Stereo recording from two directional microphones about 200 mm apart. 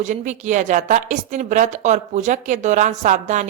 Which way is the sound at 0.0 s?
35° right (ahead or behind).